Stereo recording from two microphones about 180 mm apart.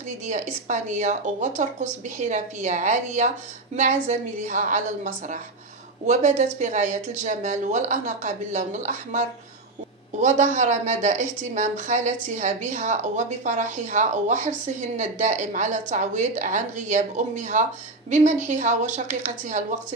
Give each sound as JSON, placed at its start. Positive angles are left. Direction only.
{"t": 0.3, "sound": "a woman's voice", "side_deg": -40}